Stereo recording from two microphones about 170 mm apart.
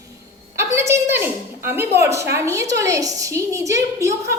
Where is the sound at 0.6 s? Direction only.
15° right (ahead or behind).